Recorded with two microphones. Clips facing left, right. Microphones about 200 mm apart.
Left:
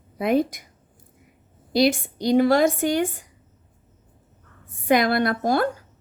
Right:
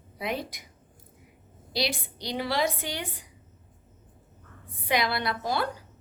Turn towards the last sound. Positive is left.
turn(degrees=50)  # may be behind; listen again after turning